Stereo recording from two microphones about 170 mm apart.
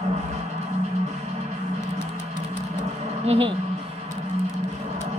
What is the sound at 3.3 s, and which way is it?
Speech, 30° right (ahead or behind).